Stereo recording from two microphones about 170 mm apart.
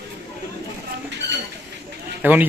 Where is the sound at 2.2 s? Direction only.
10° right (ahead or behind).